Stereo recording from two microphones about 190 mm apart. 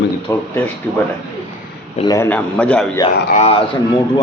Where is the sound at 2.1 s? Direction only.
10° left (ahead or behind).